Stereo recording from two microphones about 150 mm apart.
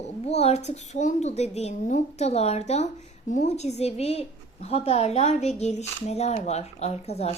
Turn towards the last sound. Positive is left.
turn(degrees=45)  # may be behind; listen again after turning